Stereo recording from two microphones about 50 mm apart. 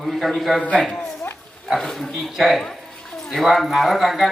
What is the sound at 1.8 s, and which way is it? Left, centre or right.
Speech, centre.